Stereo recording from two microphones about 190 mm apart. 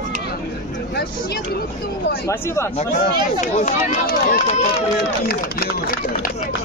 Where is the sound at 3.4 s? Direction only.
40° left (ahead or behind).